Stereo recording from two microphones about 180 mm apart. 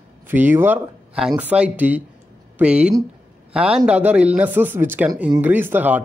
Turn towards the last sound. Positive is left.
turn(degrees=-10)  # may be behind; listen again after turning